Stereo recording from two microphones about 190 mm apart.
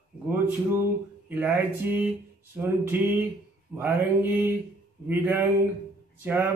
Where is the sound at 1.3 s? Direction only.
10° right (ahead or behind).